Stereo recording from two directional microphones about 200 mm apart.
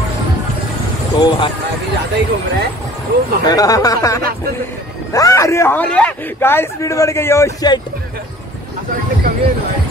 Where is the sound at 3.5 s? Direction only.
20° left (ahead or behind).